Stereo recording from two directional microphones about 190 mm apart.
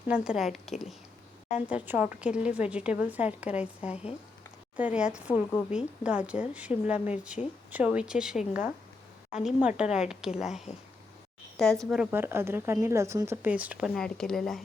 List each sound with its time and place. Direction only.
0.1 s a woman's voice: 5° right (ahead or behind)
4.8 s speech: 5° right (ahead or behind)
5.3 s a woman's voice: 20° left (ahead or behind)
5.7 s a woman's voice: 5° right (ahead or behind)
11.5 s a woman's voice: centre (ahead or behind)
12.1 s speech: 10° right (ahead or behind)